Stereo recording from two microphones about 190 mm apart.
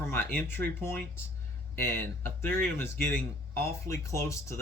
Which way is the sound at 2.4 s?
10° left (ahead or behind).